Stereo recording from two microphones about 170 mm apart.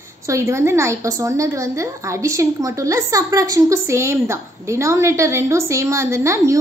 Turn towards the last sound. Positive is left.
turn(degrees=-15)  # may be behind; listen again after turning